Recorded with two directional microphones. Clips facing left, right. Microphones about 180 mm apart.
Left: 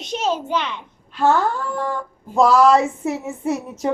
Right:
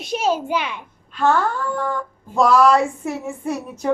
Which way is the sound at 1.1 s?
20° left (ahead or behind).